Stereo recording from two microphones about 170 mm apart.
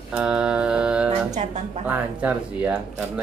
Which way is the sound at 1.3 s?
45° right (ahead or behind).